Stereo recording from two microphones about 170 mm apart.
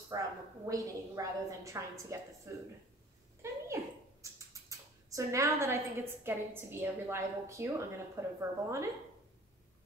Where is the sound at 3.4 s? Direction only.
15° right (ahead or behind).